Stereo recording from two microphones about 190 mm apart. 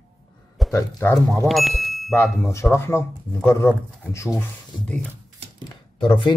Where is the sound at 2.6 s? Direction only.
10° left (ahead or behind).